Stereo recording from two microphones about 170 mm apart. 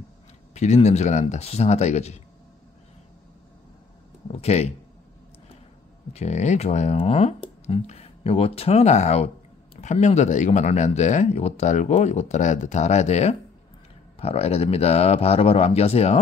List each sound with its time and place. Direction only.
0.8 s speech: 40° left (ahead or behind)
4.3 s speech: 40° left (ahead or behind)
6.1 s speech: 40° left (ahead or behind)